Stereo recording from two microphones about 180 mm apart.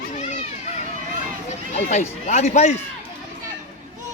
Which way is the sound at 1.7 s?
40° left (ahead or behind).